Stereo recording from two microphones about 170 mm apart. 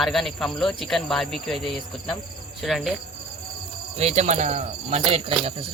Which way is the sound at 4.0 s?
40° right (ahead or behind).